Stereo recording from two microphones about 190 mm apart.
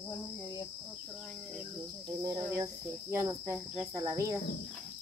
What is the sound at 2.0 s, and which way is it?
Cricket, 20° right (ahead or behind).